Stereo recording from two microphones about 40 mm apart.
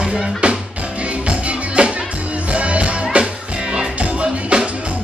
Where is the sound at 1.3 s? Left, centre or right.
Right.